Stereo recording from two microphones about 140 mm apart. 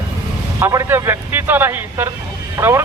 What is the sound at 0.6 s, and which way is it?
Speech, 20° right (ahead or behind).